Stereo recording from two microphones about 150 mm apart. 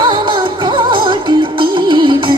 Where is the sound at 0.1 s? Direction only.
30° right (ahead or behind).